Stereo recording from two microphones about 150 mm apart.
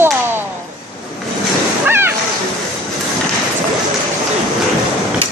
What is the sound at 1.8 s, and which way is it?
Splash, 15° right (ahead or behind).